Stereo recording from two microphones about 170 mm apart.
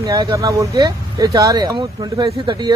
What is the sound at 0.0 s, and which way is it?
Speech, 20° right (ahead or behind).